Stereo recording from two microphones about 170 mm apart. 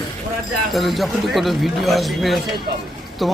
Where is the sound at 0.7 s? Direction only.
Centre (ahead or behind).